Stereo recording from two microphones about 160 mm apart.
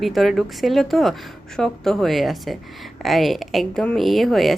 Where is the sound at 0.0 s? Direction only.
Centre (ahead or behind).